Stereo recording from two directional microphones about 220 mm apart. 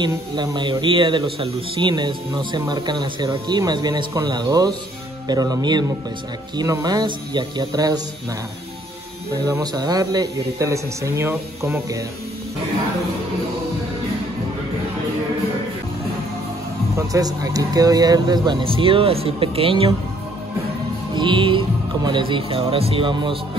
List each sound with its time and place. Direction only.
0.0 s a man's voice: 15° right (ahead or behind)
9.4 s speech: 15° right (ahead or behind)
17.1 s a man's voice: 15° right (ahead or behind)
21.1 s a man's voice: 20° right (ahead or behind)